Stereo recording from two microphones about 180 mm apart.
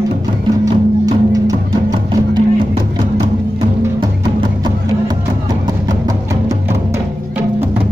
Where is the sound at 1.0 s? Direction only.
20° right (ahead or behind).